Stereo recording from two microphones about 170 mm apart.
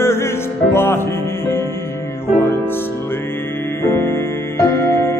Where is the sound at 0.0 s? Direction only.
15° left (ahead or behind).